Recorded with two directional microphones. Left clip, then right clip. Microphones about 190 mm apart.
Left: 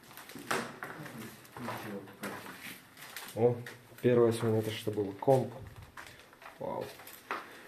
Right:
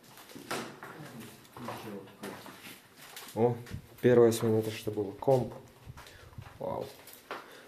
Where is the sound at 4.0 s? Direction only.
35° right (ahead or behind).